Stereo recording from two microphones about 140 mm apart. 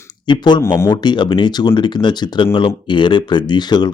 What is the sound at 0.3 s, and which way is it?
Speech, 30° left (ahead or behind).